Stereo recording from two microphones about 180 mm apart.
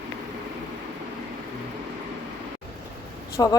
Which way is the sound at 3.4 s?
20° left (ahead or behind).